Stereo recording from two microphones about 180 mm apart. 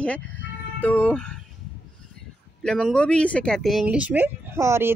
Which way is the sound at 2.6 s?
5° left (ahead or behind).